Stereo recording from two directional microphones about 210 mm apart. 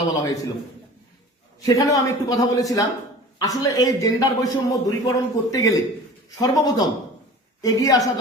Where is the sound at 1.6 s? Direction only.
15° left (ahead or behind).